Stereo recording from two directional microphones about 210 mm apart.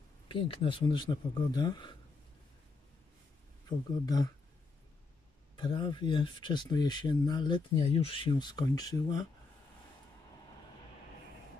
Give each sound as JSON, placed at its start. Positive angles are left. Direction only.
{"t": 0.3, "sound": "speech", "side_deg": 25}
{"t": 3.6, "sound": "speech", "side_deg": 20}
{"t": 5.6, "sound": "speech", "side_deg": 20}